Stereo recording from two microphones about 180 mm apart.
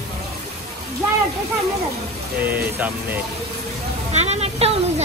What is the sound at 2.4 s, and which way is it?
Speech, 10° right (ahead or behind).